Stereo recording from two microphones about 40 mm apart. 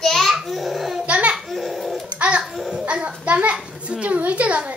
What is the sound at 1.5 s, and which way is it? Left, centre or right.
Speech, centre.